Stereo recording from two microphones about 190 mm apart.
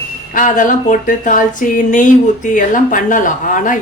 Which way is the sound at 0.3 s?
45° left (ahead or behind).